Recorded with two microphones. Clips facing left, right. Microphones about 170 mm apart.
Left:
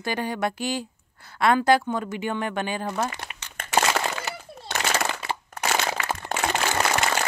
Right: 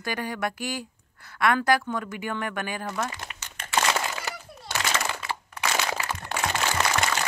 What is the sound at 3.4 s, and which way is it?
Crumpling, 50° left (ahead or behind).